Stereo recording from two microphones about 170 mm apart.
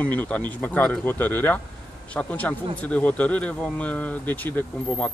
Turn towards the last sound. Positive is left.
turn(degrees=10)  # may be behind; listen again after turning